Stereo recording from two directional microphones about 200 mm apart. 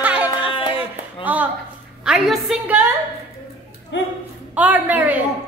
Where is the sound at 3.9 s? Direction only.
60° left (ahead or behind).